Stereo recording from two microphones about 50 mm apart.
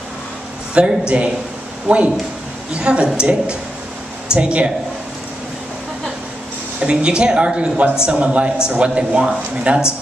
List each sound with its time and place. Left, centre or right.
0.7 s a man's voice: right
6.8 s a man's voice: centre